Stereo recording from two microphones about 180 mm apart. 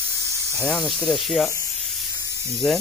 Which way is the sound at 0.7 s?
Centre (ahead or behind).